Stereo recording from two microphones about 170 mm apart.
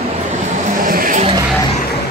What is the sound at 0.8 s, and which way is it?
Vehicle, 55° right (ahead or behind).